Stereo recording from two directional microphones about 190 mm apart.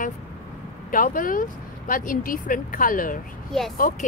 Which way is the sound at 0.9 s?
45° left (ahead or behind).